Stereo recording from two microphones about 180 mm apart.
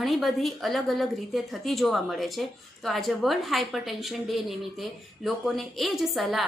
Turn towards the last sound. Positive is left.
turn(degrees=0)  # may be behind; listen again after turning